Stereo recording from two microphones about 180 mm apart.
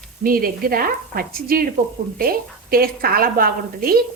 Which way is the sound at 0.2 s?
55° right (ahead or behind).